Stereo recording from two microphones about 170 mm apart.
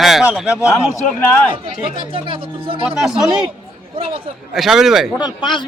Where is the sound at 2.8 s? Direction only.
5° right (ahead or behind).